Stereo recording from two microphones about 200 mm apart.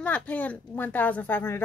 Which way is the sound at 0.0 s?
5° left (ahead or behind).